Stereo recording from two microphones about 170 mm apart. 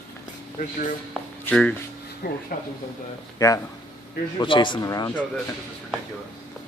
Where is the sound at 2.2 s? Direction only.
50° left (ahead or behind).